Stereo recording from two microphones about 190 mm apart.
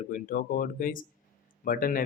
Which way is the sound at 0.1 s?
45° left (ahead or behind).